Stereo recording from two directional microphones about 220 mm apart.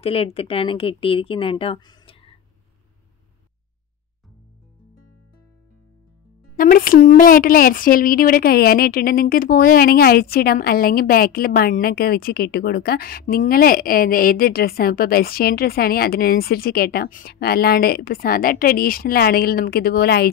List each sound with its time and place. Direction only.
0.0 s a woman's voice: 25° left (ahead or behind)
6.5 s a woman's voice: 40° left (ahead or behind)